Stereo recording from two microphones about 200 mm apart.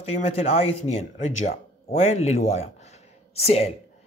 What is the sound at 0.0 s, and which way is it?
Speech, 35° left (ahead or behind).